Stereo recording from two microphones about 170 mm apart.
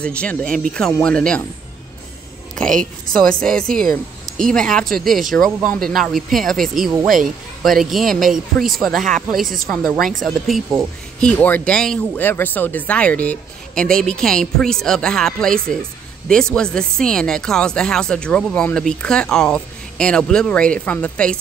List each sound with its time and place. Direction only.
0.0 s speech: 5° left (ahead or behind)
2.8 s speech: 5° left (ahead or behind)